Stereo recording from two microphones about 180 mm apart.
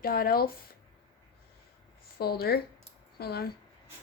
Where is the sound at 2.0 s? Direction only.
60° left (ahead or behind).